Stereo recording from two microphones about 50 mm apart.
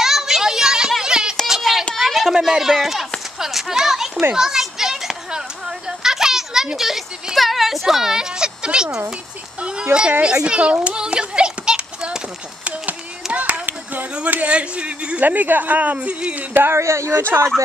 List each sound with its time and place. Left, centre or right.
0.0 s a sound: centre
2.3 s a child's voice: centre
4.4 s a sound: centre
9.6 s speech: centre
10.2 s children playing: centre
12.6 s a sound: right
14.1 s speech: right
15.2 s speech: right
16.7 s speech: right
17.2 s speech: right